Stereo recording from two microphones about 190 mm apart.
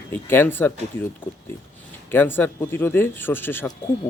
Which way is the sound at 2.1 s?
10° left (ahead or behind).